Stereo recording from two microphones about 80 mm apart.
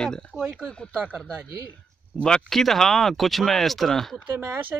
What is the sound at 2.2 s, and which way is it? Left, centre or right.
Speech, centre.